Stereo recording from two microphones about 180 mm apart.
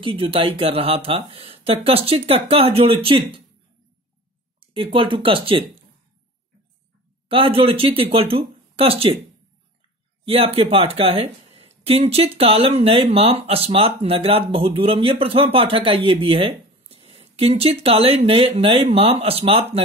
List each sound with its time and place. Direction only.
0.0 s speech: 30° right (ahead or behind)
4.6 s speech: 30° right (ahead or behind)
7.2 s speech: 30° right (ahead or behind)
10.2 s speech: 30° right (ahead or behind)